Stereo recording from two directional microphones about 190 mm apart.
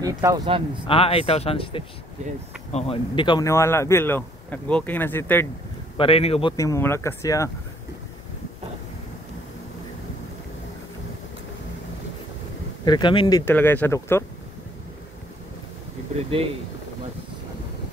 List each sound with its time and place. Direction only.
0.0 s speech: 15° right (ahead or behind)
0.8 s speech: 30° left (ahead or behind); by 5.5 s 10° left (ahead or behind)
5.9 s speech: 30° left (ahead or behind)
6.5 s speech: 15° left (ahead or behind)
12.8 s speech: 25° left (ahead or behind)
13.5 s speech: 10° left (ahead or behind)
16.2 s speech: 30° right (ahead or behind)